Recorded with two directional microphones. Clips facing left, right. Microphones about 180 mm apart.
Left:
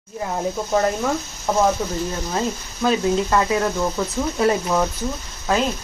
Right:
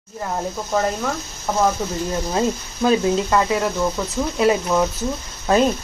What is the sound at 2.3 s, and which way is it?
Speech, 15° right (ahead or behind).